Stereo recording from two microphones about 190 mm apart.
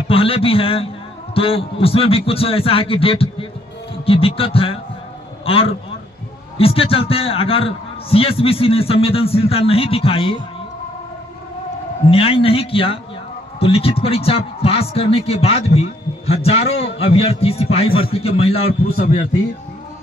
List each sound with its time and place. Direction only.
0.1 s a man's voice: 30° left (ahead or behind)
12.1 s a man's voice: 30° left (ahead or behind)
18.7 s a man's voice: 45° left (ahead or behind)